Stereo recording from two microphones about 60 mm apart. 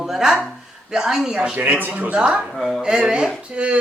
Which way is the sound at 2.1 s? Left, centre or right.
Centre.